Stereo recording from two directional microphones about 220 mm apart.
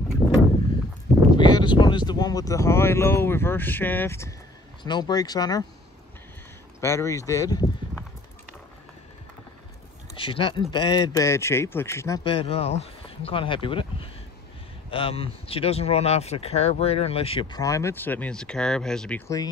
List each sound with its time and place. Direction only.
1.4 s speech: 20° left (ahead or behind)
6.8 s speech: 15° left (ahead or behind)
10.1 s speech: 25° left (ahead or behind)